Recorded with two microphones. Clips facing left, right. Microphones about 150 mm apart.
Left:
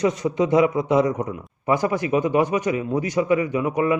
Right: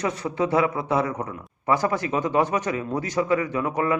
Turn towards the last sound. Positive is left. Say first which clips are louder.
# left 3 dB
turn(degrees=15)  # may be behind; listen again after turning